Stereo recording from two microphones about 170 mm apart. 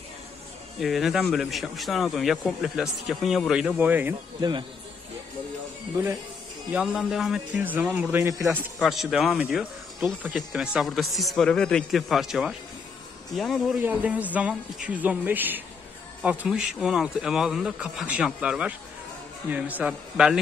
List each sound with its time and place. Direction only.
0.7 s speech: centre (ahead or behind)
4.4 s a man's voice: 25° right (ahead or behind)
6.7 s a man's voice: 5° right (ahead or behind)
8.7 s a man's voice: centre (ahead or behind)